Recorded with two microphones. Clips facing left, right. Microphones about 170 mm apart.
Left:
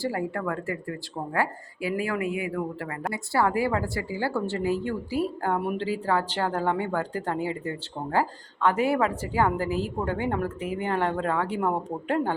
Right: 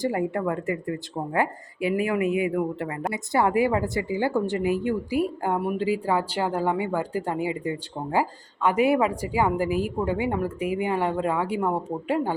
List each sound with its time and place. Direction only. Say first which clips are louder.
0.0 s speech: right 4 dB; 20° right (ahead or behind)
5.5 s speech: right 2 dB; centre (ahead or behind)
5.8 s speech: right 2 dB; 15° right (ahead or behind)